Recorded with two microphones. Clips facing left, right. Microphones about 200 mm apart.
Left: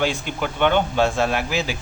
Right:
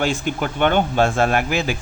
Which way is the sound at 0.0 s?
50° right (ahead or behind).